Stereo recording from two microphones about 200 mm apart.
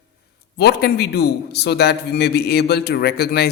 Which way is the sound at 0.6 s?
55° left (ahead or behind).